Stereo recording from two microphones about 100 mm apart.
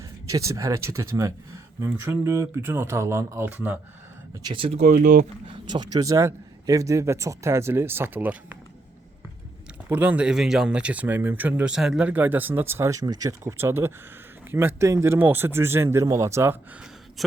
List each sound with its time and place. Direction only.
0.3 s a man's voice: 35° right (ahead or behind)
4.5 s speech: 60° right (ahead or behind)
5.5 s a man's voice: 45° right (ahead or behind); by 8.5 s 15° right (ahead or behind)
9.9 s speech: 15° right (ahead or behind)
11.7 s a man's voice: 5° right (ahead or behind); by 13.3 s 40° right (ahead or behind)
13.4 s a man's voice: 25° right (ahead or behind)
17.2 s a woman's voice: centre (ahead or behind)